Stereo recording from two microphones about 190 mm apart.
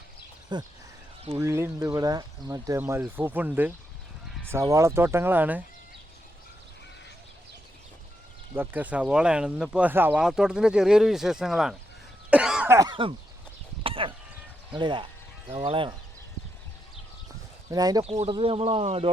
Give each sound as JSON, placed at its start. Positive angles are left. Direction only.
{"t": 0.5, "sound": "speech", "side_deg": -25}
{"t": 8.5, "sound": "speech", "side_deg": -10}
{"t": 12.3, "sound": "cough", "side_deg": -5}
{"t": 12.7, "sound": "speech", "side_deg": -20}
{"t": 13.8, "sound": "a sound", "side_deg": -30}
{"t": 14.7, "sound": "speech", "side_deg": -25}
{"t": 17.7, "sound": "speech", "side_deg": -20}
{"t": 18.0, "sound": "speech", "side_deg": -30}